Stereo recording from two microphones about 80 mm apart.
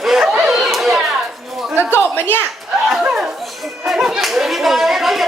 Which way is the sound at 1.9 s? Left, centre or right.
Left.